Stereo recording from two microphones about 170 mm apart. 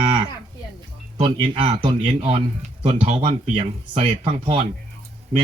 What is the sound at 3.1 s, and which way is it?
Speech, 45° right (ahead or behind).